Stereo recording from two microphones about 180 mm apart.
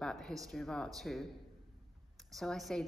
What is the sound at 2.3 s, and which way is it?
Speech, centre (ahead or behind).